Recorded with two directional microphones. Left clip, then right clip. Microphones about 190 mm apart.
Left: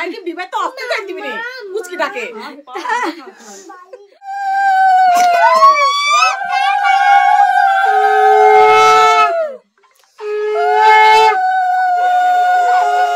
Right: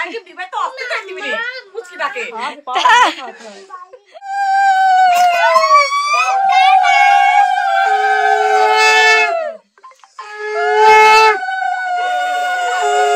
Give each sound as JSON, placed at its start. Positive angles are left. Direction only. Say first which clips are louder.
{"t": 0.0, "sound": "a woman's voice", "louder": "left 1 dB", "side_deg": 65}
{"t": 2.7, "sound": "speech", "louder": "right 8 dB", "side_deg": -5}
{"t": 4.3, "sound": "a sound", "louder": "right 1 dB", "side_deg": 20}
{"t": 5.5, "sound": "police car", "louder": "left 1 dB", "side_deg": 50}
{"t": 7.0, "sound": "a sound", "louder": "even", "side_deg": 25}
{"t": 7.9, "sound": "shofar", "louder": "left 3 dB", "side_deg": 40}
{"t": 10.5, "sound": "shofar", "louder": "even", "side_deg": 45}